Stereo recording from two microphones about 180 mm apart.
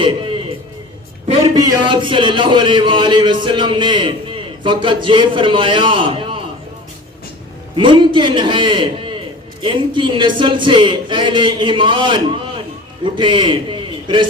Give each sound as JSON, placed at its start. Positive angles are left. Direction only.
{"t": 1.3, "sound": "a man's voice", "side_deg": -20}
{"t": 7.8, "sound": "a man's voice", "side_deg": -25}